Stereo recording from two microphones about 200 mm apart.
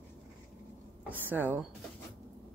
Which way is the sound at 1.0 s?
10° right (ahead or behind).